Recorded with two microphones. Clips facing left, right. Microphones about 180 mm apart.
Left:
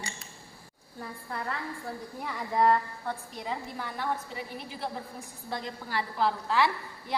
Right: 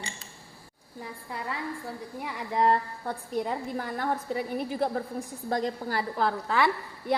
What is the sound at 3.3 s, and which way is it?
A woman's voice, 50° right (ahead or behind).